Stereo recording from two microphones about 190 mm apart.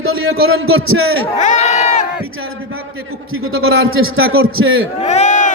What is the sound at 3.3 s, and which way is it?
A man's voice, 90° right.